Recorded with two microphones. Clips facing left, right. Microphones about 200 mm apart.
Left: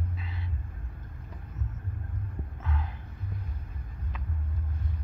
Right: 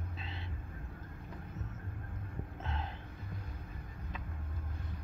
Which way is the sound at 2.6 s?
25° right (ahead or behind).